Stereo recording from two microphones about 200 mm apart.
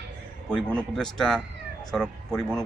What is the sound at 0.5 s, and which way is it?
Speech, 5° left (ahead or behind).